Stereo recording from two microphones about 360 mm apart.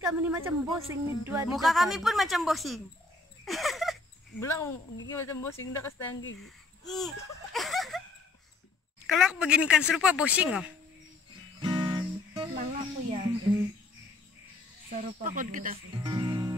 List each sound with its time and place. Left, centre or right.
0.0 s a woman's voice: centre
3.4 s a sound: centre
5.1 s speech: centre
9.0 s a woman's voice: centre
11.6 s guitar: centre
12.5 s speech: centre
14.9 s speech: centre